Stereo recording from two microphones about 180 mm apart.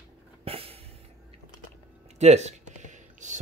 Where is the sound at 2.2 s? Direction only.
40° right (ahead or behind).